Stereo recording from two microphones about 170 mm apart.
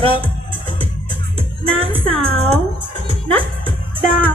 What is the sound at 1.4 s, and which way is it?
Music, 35° right (ahead or behind).